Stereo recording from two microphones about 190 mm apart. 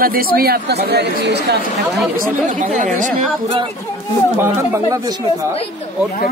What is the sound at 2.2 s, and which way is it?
Speech, 40° right (ahead or behind).